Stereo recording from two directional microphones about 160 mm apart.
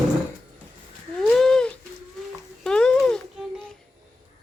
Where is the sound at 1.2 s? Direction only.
5° left (ahead or behind).